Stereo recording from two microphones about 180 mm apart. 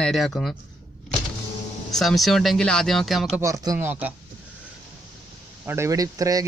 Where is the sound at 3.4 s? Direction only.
15° right (ahead or behind).